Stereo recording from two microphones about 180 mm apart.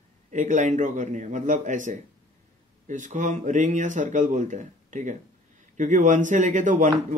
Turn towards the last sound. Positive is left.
turn(degrees=-45)  # may be behind; listen again after turning